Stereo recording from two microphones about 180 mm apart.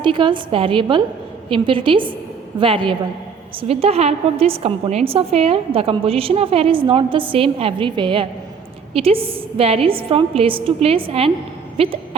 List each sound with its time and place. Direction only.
0.0 s a woman's voice: 25° right (ahead or behind)